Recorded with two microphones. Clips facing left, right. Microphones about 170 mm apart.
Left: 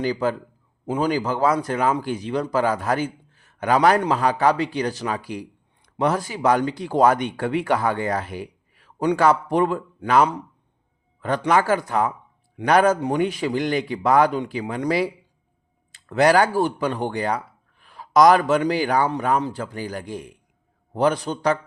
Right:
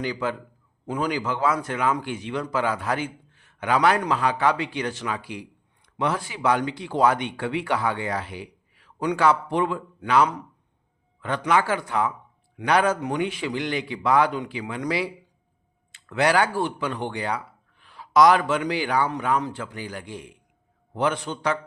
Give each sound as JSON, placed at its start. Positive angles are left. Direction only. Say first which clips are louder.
{"t": 0.0, "sound": "a man's voice", "louder": "left 5 dB", "side_deg": 40}